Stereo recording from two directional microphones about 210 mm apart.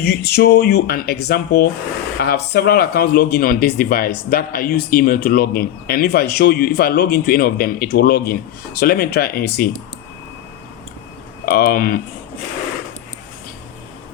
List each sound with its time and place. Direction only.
0.0 s speech: 50° left (ahead or behind)
11.5 s speech: 45° left (ahead or behind)